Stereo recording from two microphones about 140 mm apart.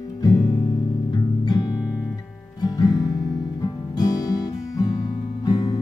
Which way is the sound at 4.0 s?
25° left (ahead or behind).